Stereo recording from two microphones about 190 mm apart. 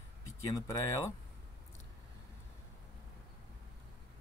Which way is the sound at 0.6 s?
15° left (ahead or behind).